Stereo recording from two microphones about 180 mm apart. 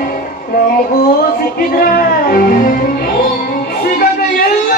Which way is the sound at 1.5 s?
55° left (ahead or behind).